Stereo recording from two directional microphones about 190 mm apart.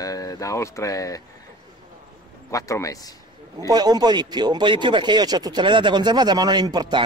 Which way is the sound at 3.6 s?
20° right (ahead or behind).